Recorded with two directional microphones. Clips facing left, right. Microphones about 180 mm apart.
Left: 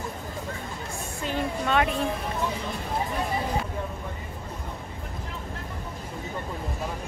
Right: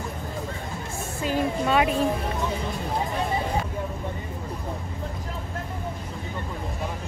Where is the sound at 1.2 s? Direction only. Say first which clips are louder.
Right 4 dB; 5° right (ahead or behind).